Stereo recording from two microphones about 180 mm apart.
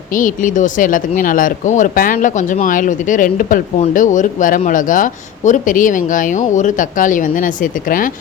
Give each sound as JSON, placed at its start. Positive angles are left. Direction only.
{"t": 0.1, "sound": "speech", "side_deg": 45}